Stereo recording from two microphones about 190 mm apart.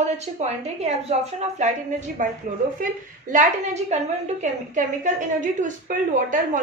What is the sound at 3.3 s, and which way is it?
A woman's voice, 40° right (ahead or behind).